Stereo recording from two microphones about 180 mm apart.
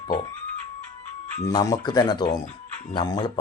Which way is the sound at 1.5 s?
20° left (ahead or behind).